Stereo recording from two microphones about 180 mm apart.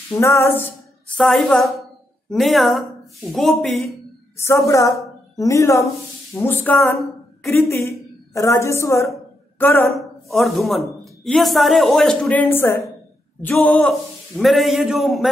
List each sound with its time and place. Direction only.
0.1 s a woman's voice: 15° left (ahead or behind)
4.4 s a woman's voice: 15° left (ahead or behind)
9.9 s a man's voice: centre (ahead or behind)